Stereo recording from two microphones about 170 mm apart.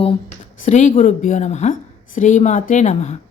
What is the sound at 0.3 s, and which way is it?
Speech, 45° left (ahead or behind).